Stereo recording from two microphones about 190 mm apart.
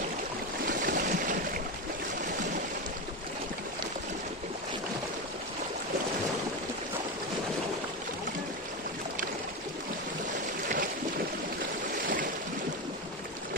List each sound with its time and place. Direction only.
0.7 s boat: 45° right (ahead or behind)